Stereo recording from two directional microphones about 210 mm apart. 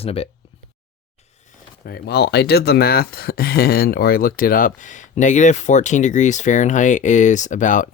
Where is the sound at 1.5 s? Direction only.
45° left (ahead or behind).